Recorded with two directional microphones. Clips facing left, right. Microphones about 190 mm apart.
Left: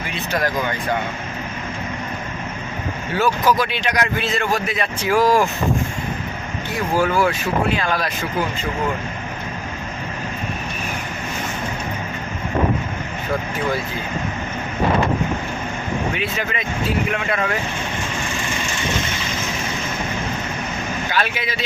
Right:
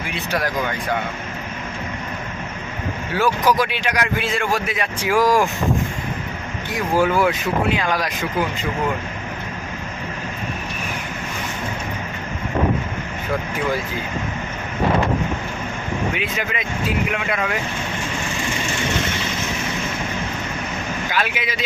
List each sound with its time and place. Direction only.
3.2 s a man's voice: 15° right (ahead or behind)
6.9 s a man's voice: 15° right (ahead or behind)
16.1 s a man's voice: 15° right (ahead or behind)
21.1 s speech: 10° right (ahead or behind)